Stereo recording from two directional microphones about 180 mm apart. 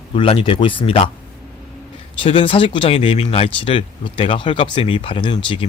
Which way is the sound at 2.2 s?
30° left (ahead or behind).